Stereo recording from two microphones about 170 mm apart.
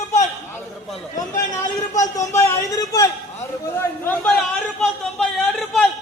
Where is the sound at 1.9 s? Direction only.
20° left (ahead or behind).